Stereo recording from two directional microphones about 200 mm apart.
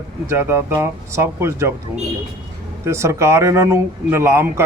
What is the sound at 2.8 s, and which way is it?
Speech, 15° right (ahead or behind).